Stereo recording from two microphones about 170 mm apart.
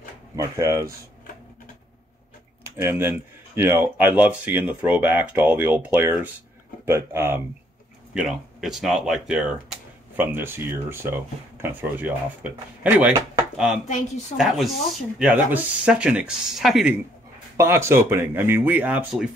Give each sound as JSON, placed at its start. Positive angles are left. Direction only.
{"t": 0.4, "sound": "speech", "side_deg": -20}
{"t": 2.8, "sound": "speech", "side_deg": -15}
{"t": 8.1, "sound": "speech", "side_deg": -5}
{"t": 12.8, "sound": "a sound", "side_deg": -15}
{"t": 14.3, "sound": "speech", "side_deg": 0}
{"t": 17.6, "sound": "speech", "side_deg": -15}